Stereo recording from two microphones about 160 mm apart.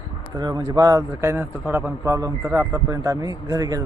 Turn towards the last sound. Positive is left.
turn(degrees=-20)  # may be behind; listen again after turning